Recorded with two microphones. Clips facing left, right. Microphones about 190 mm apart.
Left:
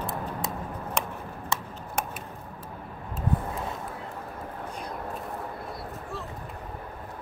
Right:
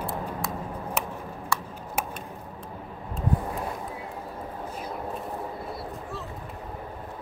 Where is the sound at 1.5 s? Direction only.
20° left (ahead or behind).